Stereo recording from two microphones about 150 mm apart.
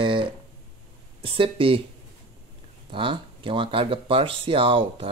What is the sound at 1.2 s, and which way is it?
Speech, 35° right (ahead or behind).